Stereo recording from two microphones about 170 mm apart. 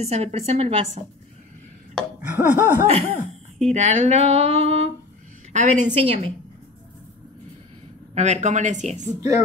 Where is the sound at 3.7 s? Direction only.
40° right (ahead or behind).